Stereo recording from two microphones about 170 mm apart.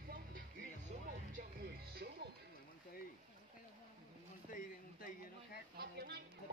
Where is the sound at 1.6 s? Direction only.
65° right (ahead or behind).